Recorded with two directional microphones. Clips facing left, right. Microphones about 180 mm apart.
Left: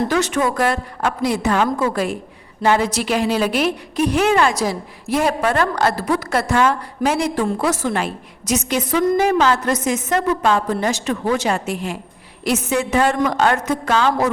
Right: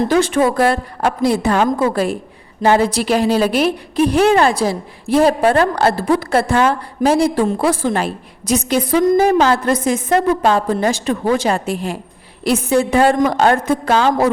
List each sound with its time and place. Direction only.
0.0 s a woman's voice: 30° right (ahead or behind)